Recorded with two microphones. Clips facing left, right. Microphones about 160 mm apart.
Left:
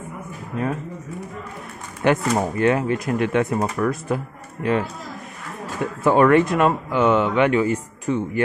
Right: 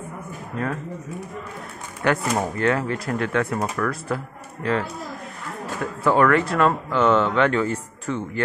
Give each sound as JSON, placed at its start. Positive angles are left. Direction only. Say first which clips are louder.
{"t": 2.0, "sound": "speech", "louder": "left 3 dB", "side_deg": 15}
{"t": 6.0, "sound": "speech", "louder": "left 3 dB", "side_deg": 20}